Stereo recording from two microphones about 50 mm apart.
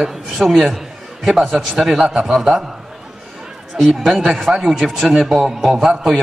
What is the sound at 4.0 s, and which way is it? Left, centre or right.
A man's voice, centre.